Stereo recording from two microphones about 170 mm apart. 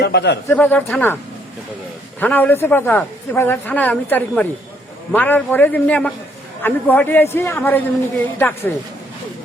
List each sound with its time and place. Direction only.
0.0 s a man's voice: 80° left
0.4 s a man's voice: 10° left (ahead or behind)